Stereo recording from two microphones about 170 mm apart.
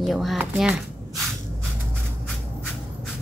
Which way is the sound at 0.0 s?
Centre (ahead or behind).